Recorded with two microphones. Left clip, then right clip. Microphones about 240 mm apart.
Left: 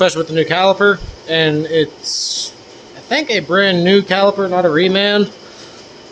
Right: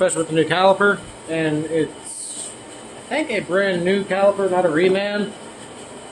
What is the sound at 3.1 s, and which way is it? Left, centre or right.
Speech, left.